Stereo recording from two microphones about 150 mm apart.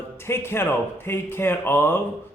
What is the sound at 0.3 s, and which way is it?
Speech, 15° left (ahead or behind).